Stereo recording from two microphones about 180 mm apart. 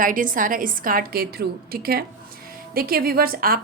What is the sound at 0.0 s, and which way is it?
A woman's voice, 50° right (ahead or behind).